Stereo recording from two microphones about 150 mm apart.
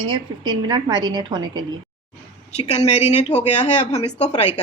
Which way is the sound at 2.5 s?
45° left (ahead or behind).